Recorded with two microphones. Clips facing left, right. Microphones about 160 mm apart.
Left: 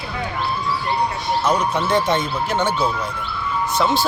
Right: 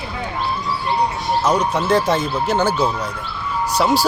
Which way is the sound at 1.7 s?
5° right (ahead or behind).